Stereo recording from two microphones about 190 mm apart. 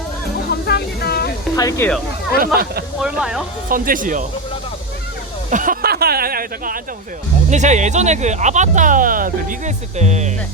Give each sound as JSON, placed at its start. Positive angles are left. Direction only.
{"t": 0.5, "sound": "a sound", "side_deg": 55}
{"t": 1.5, "sound": "speech", "side_deg": 15}
{"t": 2.4, "sound": "speech", "side_deg": -55}
{"t": 3.0, "sound": "speech", "side_deg": -5}
{"t": 3.7, "sound": "speech", "side_deg": -45}
{"t": 5.5, "sound": "speech", "side_deg": -45}
{"t": 7.5, "sound": "speech", "side_deg": -40}